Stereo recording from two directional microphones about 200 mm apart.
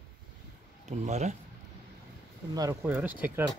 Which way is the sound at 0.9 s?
35° right (ahead or behind).